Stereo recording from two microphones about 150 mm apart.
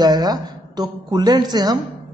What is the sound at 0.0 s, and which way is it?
A woman's voice, 25° right (ahead or behind).